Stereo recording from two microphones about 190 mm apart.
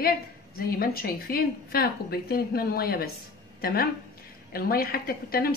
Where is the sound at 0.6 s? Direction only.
50° left (ahead or behind).